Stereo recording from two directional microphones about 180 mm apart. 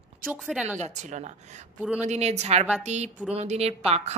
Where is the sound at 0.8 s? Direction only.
40° right (ahead or behind).